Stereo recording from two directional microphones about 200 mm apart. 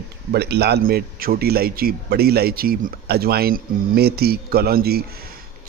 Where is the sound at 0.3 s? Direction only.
55° right (ahead or behind).